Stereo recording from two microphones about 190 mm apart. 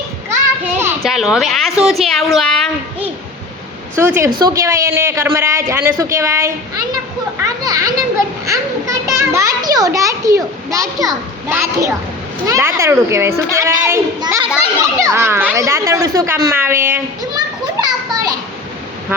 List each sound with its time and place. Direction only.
1.0 s a woman's voice: centre (ahead or behind)
3.9 s speech: 15° right (ahead or behind)
7.4 s children playing: 20° right (ahead or behind)
8.4 s a child's voice: 15° right (ahead or behind)
17.3 s children playing: 20° right (ahead or behind)